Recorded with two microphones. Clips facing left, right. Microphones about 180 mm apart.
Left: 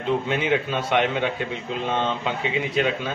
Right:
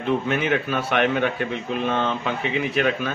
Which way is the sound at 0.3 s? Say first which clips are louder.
Even; 20° left (ahead or behind).